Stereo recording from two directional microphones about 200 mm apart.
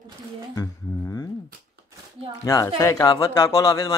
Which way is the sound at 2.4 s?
15° left (ahead or behind).